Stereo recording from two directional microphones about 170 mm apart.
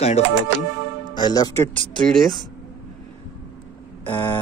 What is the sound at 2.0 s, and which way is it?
Speech, centre (ahead or behind).